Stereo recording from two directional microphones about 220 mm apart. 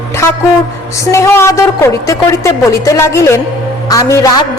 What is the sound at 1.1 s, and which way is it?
A woman's voice, 10° left (ahead or behind).